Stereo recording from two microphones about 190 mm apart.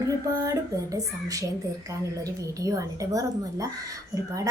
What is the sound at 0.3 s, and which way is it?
Speech, 20° right (ahead or behind).